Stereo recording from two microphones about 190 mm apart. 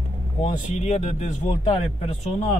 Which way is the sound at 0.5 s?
35° left (ahead or behind).